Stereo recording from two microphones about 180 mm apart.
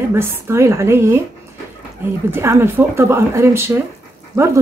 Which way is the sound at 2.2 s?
15° right (ahead or behind).